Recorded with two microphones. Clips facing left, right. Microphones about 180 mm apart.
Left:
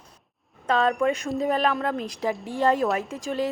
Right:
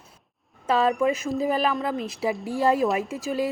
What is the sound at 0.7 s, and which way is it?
A woman's voice, 5° right (ahead or behind).